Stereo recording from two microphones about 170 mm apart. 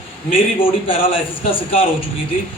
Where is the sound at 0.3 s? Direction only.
30° left (ahead or behind).